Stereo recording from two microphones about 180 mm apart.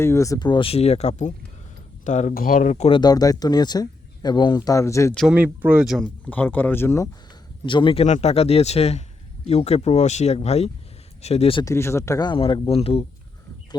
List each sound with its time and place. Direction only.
0.0 s a man's voice: 15° left (ahead or behind); by 3.0 s 35° left (ahead or behind)
3.0 s speech: 20° left (ahead or behind)
5.1 s speech: 5° right (ahead or behind); by 7.1 s 15° left (ahead or behind)
7.6 s a man's voice: 25° left (ahead or behind)
11.6 s speech: 15° left (ahead or behind); by 13.1 s 35° left (ahead or behind)